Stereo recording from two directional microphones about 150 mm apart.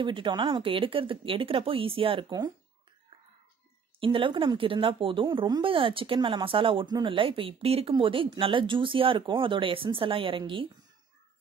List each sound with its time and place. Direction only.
0.0 s speech: 30° right (ahead or behind)
4.0 s speech: 35° right (ahead or behind)